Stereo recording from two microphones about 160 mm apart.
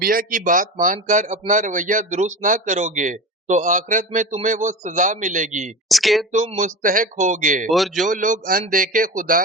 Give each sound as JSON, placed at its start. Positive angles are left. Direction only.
{"t": 0.0, "sound": "a man's voice", "side_deg": -65}
{"t": 5.9, "sound": "speech", "side_deg": 0}
{"t": 6.3, "sound": "a man's voice", "side_deg": -50}
{"t": 7.7, "sound": "speech", "side_deg": 0}
{"t": 8.0, "sound": "speech", "side_deg": -55}